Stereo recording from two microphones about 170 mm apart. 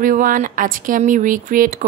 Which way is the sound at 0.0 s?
50° right (ahead or behind).